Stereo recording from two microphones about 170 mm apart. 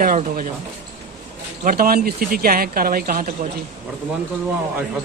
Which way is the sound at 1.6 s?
60° right (ahead or behind).